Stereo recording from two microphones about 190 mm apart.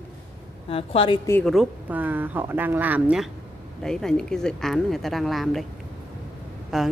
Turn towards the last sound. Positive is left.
turn(degrees=0)  # may be behind; listen again after turning